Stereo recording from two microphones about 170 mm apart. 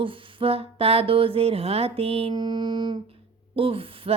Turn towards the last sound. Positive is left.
turn(degrees=-35)  # may be behind; listen again after turning